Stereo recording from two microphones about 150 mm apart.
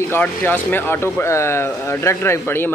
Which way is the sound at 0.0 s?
10° left (ahead or behind).